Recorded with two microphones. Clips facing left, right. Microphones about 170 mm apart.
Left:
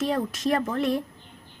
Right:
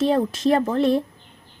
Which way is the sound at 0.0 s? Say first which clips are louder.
Right 6 dB; 30° right (ahead or behind).